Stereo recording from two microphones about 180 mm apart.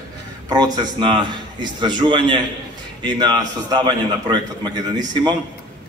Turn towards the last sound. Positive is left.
turn(degrees=-25)  # may be behind; listen again after turning